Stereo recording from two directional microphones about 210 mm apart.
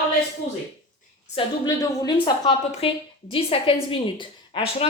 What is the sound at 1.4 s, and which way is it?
A woman's voice, 15° left (ahead or behind).